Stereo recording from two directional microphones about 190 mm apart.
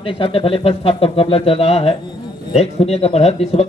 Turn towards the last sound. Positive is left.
turn(degrees=35)  # may be behind; listen again after turning